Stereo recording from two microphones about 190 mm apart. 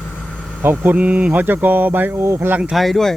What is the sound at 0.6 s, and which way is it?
Speech, 10° right (ahead or behind).